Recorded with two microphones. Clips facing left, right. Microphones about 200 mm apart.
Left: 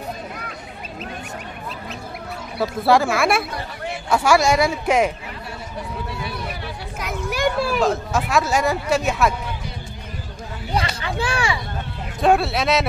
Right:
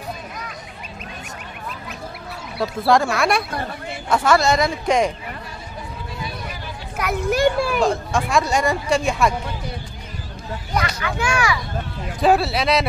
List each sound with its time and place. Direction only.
2.6 s speech: centre (ahead or behind)
7.0 s children playing: 65° right (ahead or behind)
7.7 s speech: 5° left (ahead or behind)
10.7 s speech: 30° left (ahead or behind)
12.2 s speech: centre (ahead or behind)